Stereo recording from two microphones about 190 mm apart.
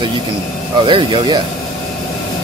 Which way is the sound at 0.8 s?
25° right (ahead or behind).